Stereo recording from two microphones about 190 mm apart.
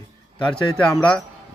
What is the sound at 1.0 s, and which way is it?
Speech, 5° left (ahead or behind).